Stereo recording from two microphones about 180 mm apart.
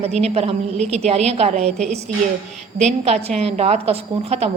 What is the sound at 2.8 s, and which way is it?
A woman's voice, 40° right (ahead or behind).